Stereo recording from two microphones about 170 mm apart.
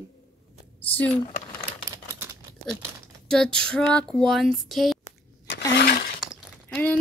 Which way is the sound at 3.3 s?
5° left (ahead or behind).